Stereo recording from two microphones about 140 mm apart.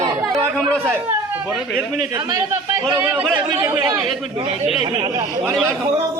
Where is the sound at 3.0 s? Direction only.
15° right (ahead or behind).